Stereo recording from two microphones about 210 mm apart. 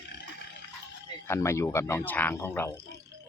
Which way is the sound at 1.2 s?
10° left (ahead or behind).